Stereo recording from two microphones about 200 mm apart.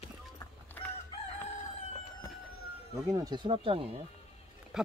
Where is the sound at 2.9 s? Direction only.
15° right (ahead or behind).